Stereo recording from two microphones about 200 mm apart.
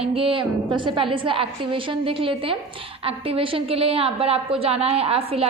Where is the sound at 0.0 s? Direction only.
30° right (ahead or behind).